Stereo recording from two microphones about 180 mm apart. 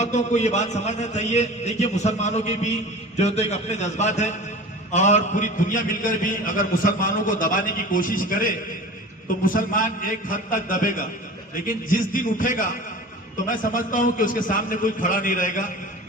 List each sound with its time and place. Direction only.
0.0 s a man's voice: 40° left (ahead or behind)
9.5 s a man's voice: 50° left (ahead or behind)